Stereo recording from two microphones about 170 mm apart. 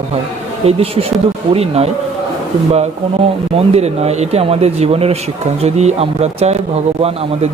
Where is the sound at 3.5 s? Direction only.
40° right (ahead or behind).